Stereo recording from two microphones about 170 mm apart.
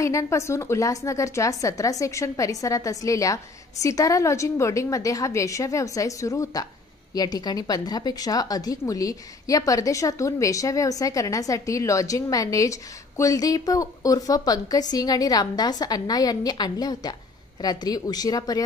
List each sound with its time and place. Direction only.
0.0 s a woman's voice: 20° left (ahead or behind)